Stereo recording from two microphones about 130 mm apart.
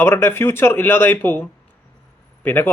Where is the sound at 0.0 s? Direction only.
15° left (ahead or behind).